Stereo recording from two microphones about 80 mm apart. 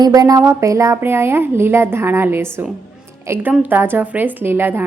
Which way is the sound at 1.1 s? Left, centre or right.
Right.